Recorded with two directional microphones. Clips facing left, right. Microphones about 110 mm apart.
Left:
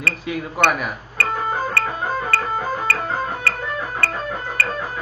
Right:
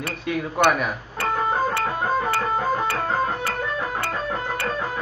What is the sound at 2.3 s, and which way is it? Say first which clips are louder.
Music: right 1 dB; 15° right (ahead or behind).